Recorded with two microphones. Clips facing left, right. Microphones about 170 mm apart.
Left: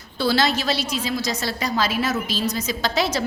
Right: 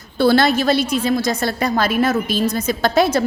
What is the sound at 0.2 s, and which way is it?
A woman's voice, 55° right (ahead or behind).